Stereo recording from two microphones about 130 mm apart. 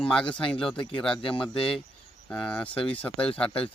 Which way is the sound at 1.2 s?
45° left (ahead or behind).